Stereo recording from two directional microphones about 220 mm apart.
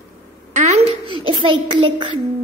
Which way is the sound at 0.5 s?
30° right (ahead or behind).